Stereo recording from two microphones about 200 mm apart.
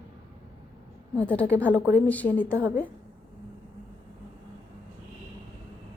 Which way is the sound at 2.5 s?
10° right (ahead or behind).